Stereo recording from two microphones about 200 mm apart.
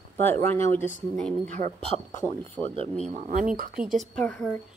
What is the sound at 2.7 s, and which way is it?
Speech, 30° right (ahead or behind).